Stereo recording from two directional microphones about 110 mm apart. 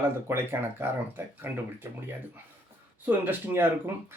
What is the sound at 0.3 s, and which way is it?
Speech, 20° right (ahead or behind).